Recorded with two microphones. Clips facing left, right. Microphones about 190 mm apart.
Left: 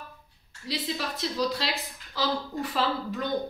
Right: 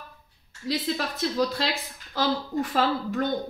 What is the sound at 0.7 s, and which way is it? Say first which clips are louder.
Speech: right 4 dB; 50° right (ahead or behind).